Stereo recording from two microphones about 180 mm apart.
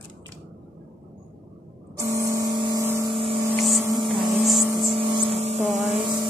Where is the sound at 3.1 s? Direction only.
30° right (ahead or behind).